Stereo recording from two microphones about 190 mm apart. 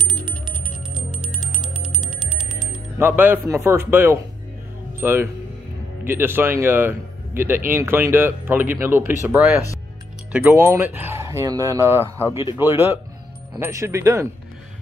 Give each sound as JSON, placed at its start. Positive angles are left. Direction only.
{"t": 2.7, "sound": "speech", "side_deg": -10}